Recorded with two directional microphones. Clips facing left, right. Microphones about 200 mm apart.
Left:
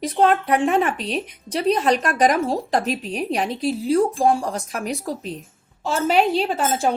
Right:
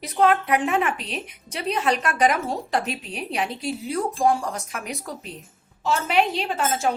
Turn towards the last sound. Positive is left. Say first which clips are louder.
# left 4 dB
turn(degrees=30)  # may be behind; listen again after turning